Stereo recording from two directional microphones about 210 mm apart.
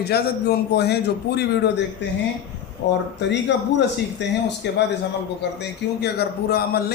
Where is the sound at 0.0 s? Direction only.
50° left (ahead or behind).